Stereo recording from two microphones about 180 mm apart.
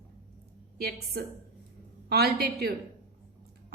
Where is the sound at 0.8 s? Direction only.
60° right (ahead or behind).